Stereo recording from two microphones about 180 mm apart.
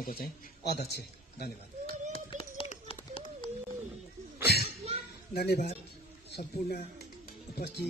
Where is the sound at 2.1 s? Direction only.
35° left (ahead or behind).